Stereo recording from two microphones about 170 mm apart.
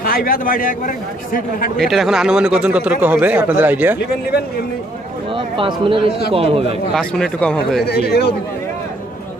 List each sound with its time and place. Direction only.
0.0 s a man's voice: 60° left (ahead or behind)
1.8 s a man's voice: centre (ahead or behind)
5.6 s a man's voice: 30° right (ahead or behind)
7.0 s speech: 5° left (ahead or behind)
7.8 s speech: 75° left (ahead or behind)